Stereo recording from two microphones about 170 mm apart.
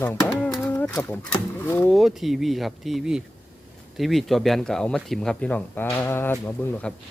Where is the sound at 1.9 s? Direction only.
Centre (ahead or behind).